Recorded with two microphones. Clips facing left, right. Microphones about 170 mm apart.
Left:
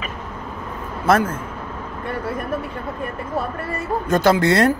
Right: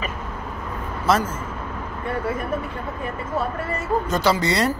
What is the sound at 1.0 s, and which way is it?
Speech, 55° left (ahead or behind).